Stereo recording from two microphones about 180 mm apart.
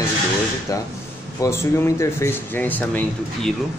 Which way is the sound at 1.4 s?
15° left (ahead or behind).